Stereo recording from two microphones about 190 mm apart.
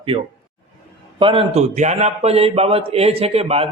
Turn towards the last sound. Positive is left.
turn(degrees=-30)  # may be behind; listen again after turning